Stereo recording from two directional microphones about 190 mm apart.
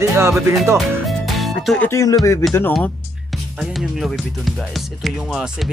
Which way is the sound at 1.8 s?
15° left (ahead or behind).